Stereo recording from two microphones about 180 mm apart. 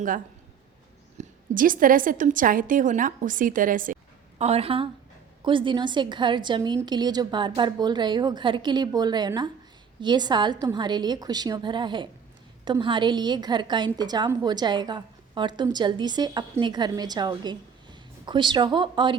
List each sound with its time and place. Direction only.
1.2 s a woman's voice: 50° right (ahead or behind)
4.4 s a woman's voice: 35° right (ahead or behind)